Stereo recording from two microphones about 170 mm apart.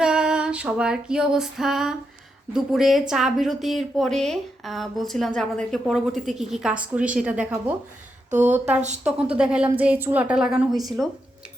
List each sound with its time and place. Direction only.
0.0 s female singing: 5° right (ahead or behind)
2.5 s a woman's voice: centre (ahead or behind)